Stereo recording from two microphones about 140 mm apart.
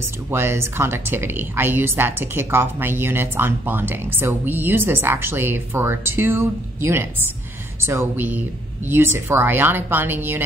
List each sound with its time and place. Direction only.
0.3 s a woman's voice: 15° right (ahead or behind)